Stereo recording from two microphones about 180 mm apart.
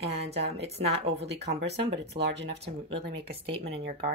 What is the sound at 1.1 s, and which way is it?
Speech, 65° right (ahead or behind).